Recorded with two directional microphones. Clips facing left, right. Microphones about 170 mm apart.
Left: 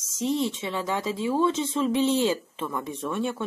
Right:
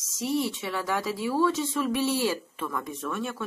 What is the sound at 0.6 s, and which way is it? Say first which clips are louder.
Speech: left 1 dB; 20° left (ahead or behind).